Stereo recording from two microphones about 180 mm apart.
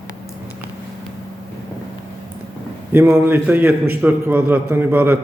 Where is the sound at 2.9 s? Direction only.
10° right (ahead or behind).